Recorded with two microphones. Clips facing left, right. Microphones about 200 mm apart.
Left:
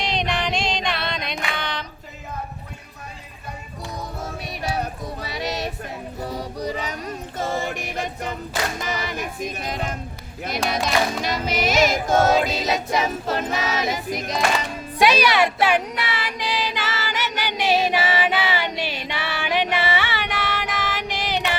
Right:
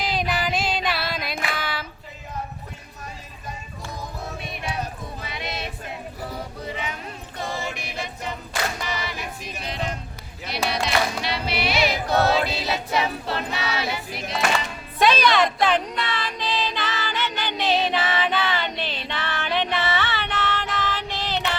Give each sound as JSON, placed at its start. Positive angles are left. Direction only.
{"t": 0.0, "sound": "music", "side_deg": -5}
{"t": 5.2, "sound": "a sound", "side_deg": 40}
{"t": 7.9, "sound": "music", "side_deg": 45}
{"t": 14.9, "sound": "child singing", "side_deg": 10}